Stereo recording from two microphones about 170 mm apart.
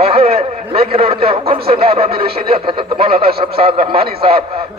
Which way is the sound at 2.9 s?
60° right (ahead or behind).